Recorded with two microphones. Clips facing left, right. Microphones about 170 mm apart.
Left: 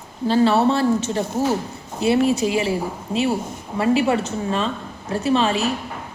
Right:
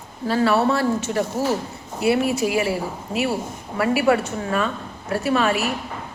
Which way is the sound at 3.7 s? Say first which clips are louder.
Even; 25° left (ahead or behind).